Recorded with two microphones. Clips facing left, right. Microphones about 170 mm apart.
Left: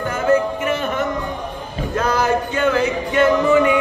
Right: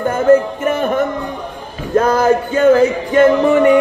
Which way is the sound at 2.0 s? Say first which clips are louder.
Right 6 dB; 50° right (ahead or behind).